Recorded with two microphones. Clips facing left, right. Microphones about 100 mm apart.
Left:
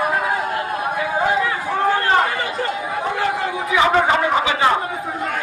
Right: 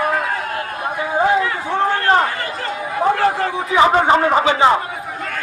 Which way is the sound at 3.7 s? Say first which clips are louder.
Right 3 dB; 30° right (ahead or behind).